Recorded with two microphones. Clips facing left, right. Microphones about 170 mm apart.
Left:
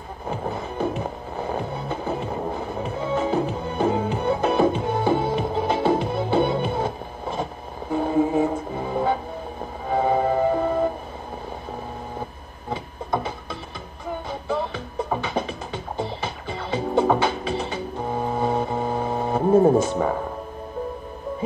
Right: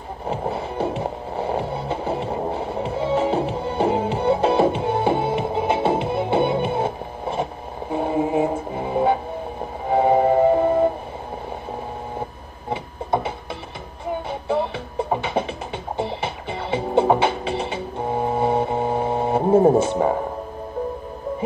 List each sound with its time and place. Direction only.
0.3 s music: 30° right (ahead or behind)
12.6 s a sound: 25° right (ahead or behind)
14.5 s music: 25° right (ahead or behind)